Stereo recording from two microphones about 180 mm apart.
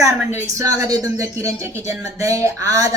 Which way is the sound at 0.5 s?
20° right (ahead or behind).